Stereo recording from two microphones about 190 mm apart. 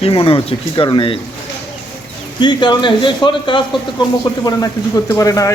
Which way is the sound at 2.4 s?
25° left (ahead or behind).